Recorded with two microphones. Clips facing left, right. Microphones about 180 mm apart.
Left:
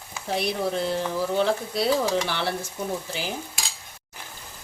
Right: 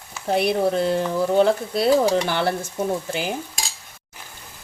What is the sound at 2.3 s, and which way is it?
Stir, 50° right (ahead or behind).